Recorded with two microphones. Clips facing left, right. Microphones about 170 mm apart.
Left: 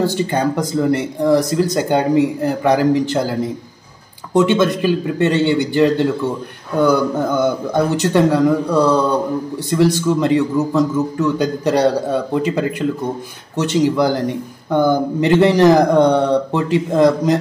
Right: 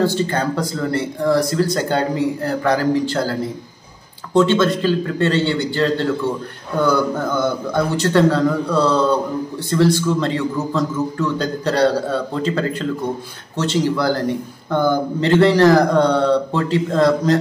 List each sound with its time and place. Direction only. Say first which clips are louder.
0.0 s speech: left 1 dB; 15° left (ahead or behind)